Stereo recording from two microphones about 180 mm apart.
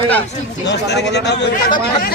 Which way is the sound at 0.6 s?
70° left (ahead or behind).